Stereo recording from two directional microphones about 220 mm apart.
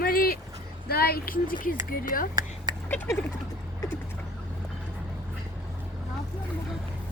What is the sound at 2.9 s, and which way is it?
Speech, 10° left (ahead or behind).